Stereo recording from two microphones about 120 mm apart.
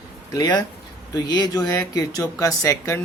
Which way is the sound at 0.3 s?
30° left (ahead or behind).